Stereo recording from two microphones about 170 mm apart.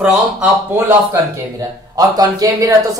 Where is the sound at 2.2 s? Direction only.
20° right (ahead or behind).